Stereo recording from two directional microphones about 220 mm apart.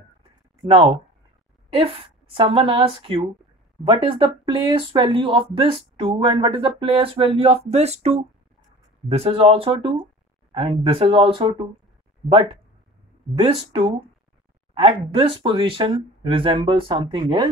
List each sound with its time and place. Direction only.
1.8 s speech: 25° right (ahead or behind)
13.4 s speech: 25° right (ahead or behind)